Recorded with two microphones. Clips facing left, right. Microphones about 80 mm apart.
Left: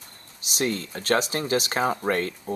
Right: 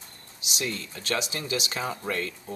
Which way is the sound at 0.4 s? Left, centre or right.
Left.